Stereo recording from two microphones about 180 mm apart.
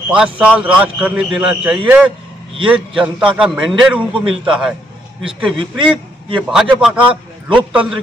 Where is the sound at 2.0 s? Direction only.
30° right (ahead or behind).